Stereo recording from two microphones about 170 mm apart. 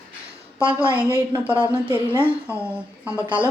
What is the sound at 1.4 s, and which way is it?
Speech, 10° right (ahead or behind).